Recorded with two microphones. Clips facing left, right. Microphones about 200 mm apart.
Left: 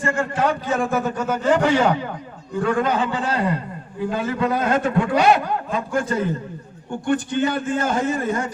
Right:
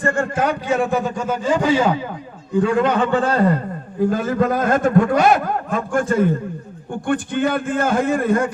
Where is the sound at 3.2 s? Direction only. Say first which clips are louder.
Right 5 dB; 50° right (ahead or behind).